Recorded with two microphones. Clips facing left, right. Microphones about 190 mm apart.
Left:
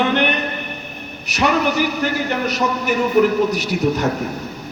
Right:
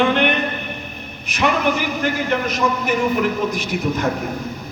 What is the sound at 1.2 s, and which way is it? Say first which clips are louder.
A man's voice: left 1 dB; 40° left (ahead or behind).